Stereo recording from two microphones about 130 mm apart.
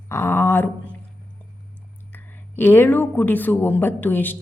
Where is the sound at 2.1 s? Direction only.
15° left (ahead or behind).